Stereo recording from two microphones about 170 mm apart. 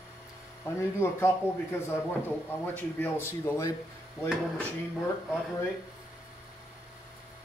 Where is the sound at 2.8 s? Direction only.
10° left (ahead or behind).